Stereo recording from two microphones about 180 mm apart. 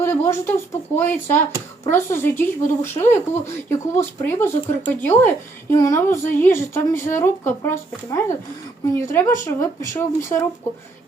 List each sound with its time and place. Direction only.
0.0 s a woman's voice: 15° left (ahead or behind)